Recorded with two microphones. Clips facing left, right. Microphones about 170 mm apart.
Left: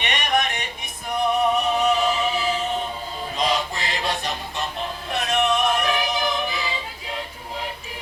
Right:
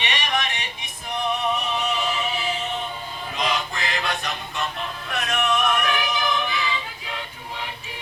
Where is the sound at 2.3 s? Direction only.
35° left (ahead or behind).